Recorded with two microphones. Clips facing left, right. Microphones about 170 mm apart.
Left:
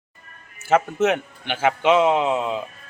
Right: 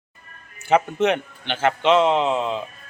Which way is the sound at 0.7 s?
5° left (ahead or behind).